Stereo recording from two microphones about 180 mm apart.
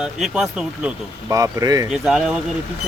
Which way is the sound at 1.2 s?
20° right (ahead or behind).